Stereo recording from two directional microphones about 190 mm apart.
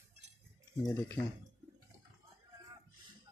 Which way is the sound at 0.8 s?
10° left (ahead or behind).